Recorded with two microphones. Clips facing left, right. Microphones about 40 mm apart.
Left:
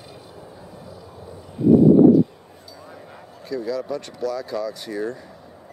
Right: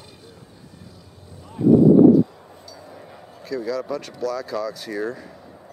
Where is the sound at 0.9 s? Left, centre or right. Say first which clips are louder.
Left 7 dB; centre.